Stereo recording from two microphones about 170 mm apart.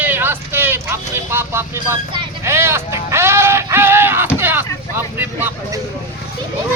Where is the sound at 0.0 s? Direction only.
10° right (ahead or behind).